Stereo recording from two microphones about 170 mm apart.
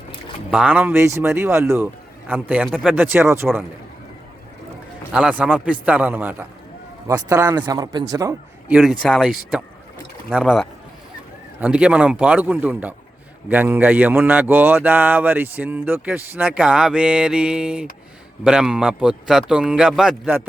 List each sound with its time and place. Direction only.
0.5 s speech: 10° right (ahead or behind)
2.6 s a man's voice: centre (ahead or behind)
2.9 s speech: 10° right (ahead or behind)
5.1 s speech: 5° right (ahead or behind)
8.6 s a man's voice: 5° right (ahead or behind)